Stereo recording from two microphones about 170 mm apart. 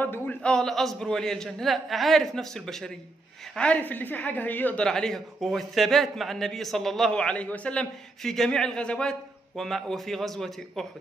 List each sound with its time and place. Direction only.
0.0 s a woman's voice: 10° left (ahead or behind)